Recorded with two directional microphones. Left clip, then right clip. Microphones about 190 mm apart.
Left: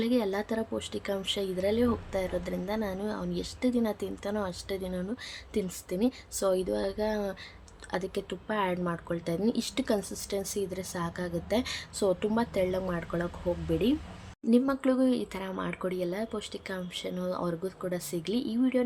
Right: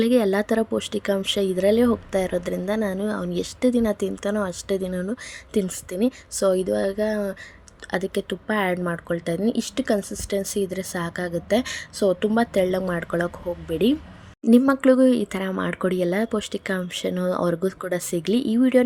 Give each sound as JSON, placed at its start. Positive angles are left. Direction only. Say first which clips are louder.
{"t": 0.0, "sound": "speech", "louder": "right 9 dB", "side_deg": -30}